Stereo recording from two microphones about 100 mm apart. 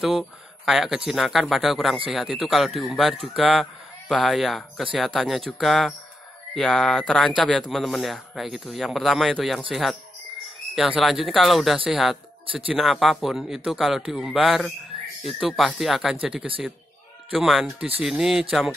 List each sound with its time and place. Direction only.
0.7 s speech: 5° right (ahead or behind)
17.6 s speech: 15° right (ahead or behind)
18.0 s speech: 5° right (ahead or behind)